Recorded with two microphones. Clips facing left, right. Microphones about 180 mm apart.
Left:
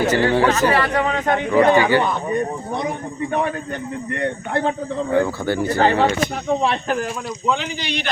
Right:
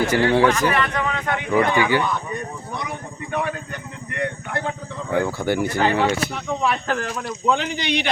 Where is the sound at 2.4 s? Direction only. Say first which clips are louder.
Left 7 dB; 25° left (ahead or behind).